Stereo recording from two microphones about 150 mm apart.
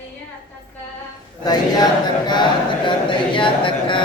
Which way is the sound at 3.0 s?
35° left (ahead or behind).